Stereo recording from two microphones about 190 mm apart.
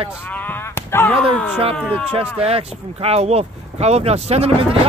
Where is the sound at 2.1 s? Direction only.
30° right (ahead or behind).